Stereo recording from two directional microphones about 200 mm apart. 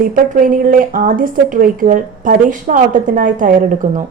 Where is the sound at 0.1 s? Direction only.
45° right (ahead or behind).